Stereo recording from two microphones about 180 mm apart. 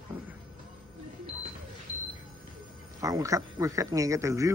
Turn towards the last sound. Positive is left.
turn(degrees=-15)  # may be behind; listen again after turning